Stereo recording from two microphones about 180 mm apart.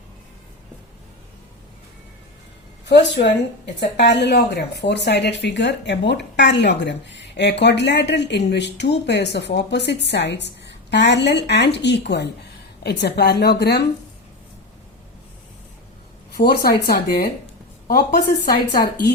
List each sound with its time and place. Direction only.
2.9 s a woman's voice: 70° left (ahead or behind)
16.4 s a woman's voice: 60° left (ahead or behind)